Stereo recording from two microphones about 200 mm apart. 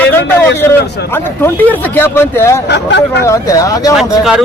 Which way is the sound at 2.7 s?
60° left (ahead or behind).